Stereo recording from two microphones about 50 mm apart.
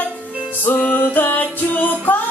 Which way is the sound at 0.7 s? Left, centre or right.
Left.